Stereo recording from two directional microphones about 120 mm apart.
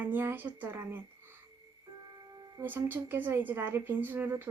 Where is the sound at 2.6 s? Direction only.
15° right (ahead or behind).